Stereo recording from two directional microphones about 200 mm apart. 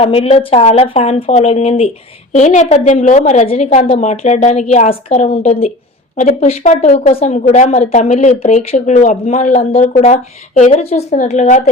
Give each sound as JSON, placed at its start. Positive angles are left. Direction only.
{"t": 0.0, "sound": "speech", "side_deg": 30}